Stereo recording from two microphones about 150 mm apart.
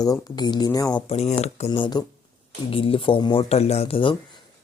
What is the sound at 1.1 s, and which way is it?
Speech, 45° left (ahead or behind).